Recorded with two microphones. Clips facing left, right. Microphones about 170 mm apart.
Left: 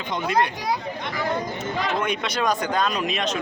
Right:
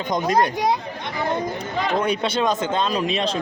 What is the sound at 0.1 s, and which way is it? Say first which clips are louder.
Speech: right 3 dB; 40° right (ahead or behind).